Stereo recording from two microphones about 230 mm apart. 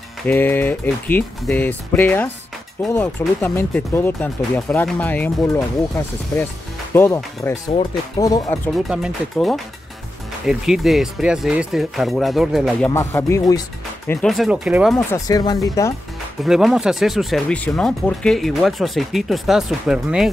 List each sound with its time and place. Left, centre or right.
0.3 s speech: centre
8.7 s speech: centre
12.9 s speech: centre
15.1 s speech: centre
16.4 s speech: centre